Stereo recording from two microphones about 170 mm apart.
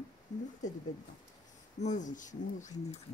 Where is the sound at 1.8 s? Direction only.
45° left (ahead or behind).